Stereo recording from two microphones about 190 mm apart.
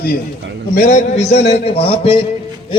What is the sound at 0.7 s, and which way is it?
A man's voice, 40° left (ahead or behind).